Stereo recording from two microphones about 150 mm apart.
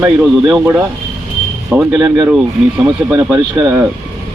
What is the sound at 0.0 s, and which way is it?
Speech, 10° right (ahead or behind).